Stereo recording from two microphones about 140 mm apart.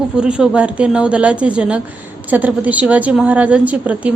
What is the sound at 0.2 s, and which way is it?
A woman's voice, 5° right (ahead or behind).